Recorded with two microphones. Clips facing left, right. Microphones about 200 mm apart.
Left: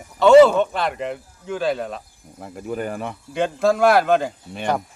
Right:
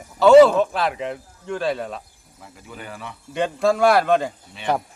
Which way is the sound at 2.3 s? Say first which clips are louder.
Left 12 dB; 50° left (ahead or behind).